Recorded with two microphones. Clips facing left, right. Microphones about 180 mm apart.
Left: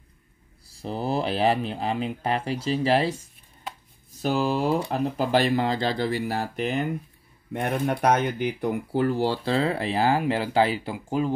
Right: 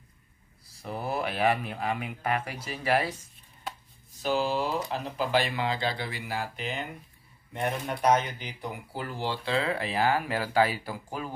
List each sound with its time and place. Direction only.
0.7 s speech: 30° left (ahead or behind)
4.2 s speech: 45° left (ahead or behind)
7.5 s speech: 60° left (ahead or behind); by 11.3 s 25° left (ahead or behind)